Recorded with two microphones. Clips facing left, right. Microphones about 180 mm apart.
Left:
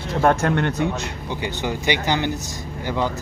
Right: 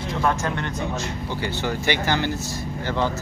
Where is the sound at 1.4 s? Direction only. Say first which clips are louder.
Left 1 dB; 15° left (ahead or behind).